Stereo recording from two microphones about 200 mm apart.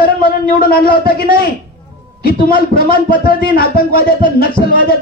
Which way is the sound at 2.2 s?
45° left (ahead or behind).